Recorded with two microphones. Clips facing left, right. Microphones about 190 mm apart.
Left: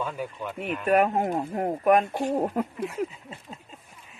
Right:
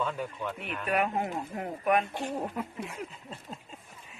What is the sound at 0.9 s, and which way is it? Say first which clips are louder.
Speech: left 7 dB; 45° left (ahead or behind).